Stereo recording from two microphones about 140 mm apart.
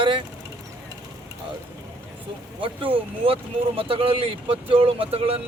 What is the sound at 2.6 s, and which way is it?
Speech, 40° right (ahead or behind).